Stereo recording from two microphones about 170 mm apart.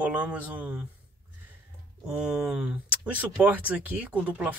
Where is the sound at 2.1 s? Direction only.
5° right (ahead or behind).